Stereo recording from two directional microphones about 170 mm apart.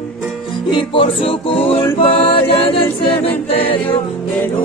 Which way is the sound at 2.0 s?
30° left (ahead or behind).